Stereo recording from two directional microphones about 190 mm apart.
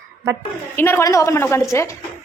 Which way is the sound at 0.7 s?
10° left (ahead or behind).